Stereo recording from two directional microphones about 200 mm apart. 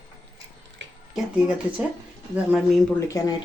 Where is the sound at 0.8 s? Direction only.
65° right (ahead or behind).